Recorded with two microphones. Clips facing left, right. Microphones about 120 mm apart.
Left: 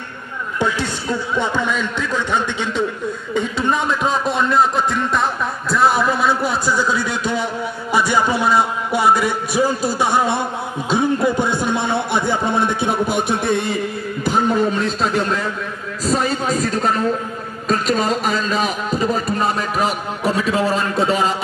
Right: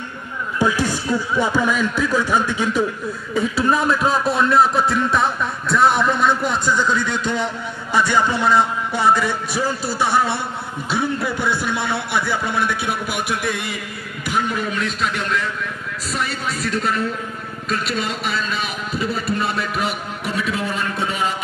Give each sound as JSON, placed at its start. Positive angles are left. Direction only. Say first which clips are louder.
{"t": 0.6, "sound": "speech", "louder": "right 2 dB", "side_deg": -10}
{"t": 3.3, "sound": "a sound", "louder": "right 1 dB", "side_deg": -5}
{"t": 17.6, "sound": "speech", "louder": "left 6 dB", "side_deg": 40}